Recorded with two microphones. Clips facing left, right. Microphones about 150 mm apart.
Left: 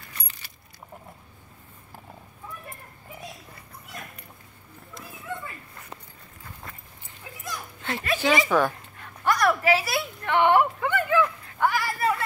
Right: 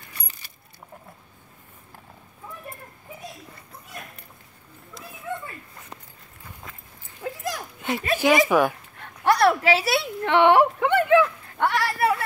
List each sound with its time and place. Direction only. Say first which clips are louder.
7.2 s dog: right 13 dB; 60° right (ahead or behind)
7.8 s speech: right 4 dB; 15° right (ahead or behind)
9.2 s a sound: right 4 dB; 70° right (ahead or behind)